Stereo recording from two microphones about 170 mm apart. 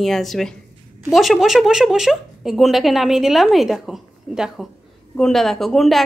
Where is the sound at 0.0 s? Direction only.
Centre (ahead or behind).